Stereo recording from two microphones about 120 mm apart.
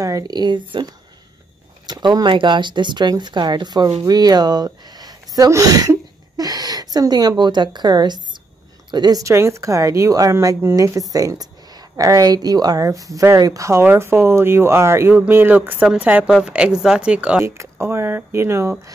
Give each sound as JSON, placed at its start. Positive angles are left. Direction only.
{"t": 0.0, "sound": "speech", "side_deg": -30}
{"t": 17.4, "sound": "speech", "side_deg": -20}